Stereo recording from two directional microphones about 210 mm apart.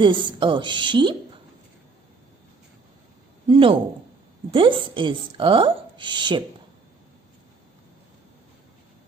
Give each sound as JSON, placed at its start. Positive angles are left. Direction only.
{"t": 0.0, "sound": "a woman's voice", "side_deg": -25}
{"t": 3.4, "sound": "a woman's voice", "side_deg": -25}